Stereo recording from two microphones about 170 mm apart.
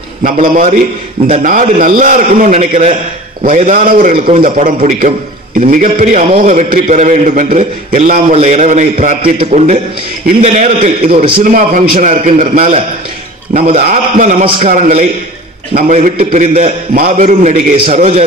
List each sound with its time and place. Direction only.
0.2 s a man's voice: 50° right (ahead or behind)
3.4 s a man's voice: 50° right (ahead or behind)